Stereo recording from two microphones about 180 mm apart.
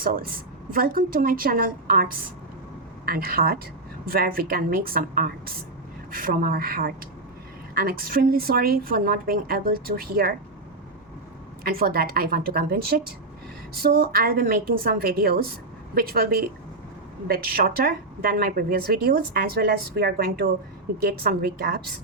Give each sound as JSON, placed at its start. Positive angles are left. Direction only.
{"t": 0.0, "sound": "a woman's voice", "side_deg": -50}
{"t": 3.1, "sound": "a woman's voice", "side_deg": -55}
{"t": 11.6, "sound": "speech", "side_deg": -55}